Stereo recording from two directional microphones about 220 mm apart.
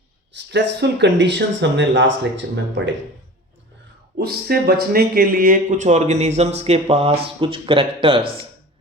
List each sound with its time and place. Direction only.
0.3 s speech: 55° right (ahead or behind)
4.2 s speech: 45° right (ahead or behind); by 8.2 s 25° right (ahead or behind)